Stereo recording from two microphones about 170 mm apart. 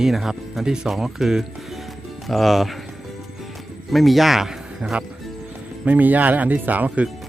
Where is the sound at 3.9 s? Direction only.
Centre (ahead or behind).